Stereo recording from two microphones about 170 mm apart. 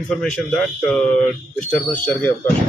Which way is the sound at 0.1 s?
5° left (ahead or behind).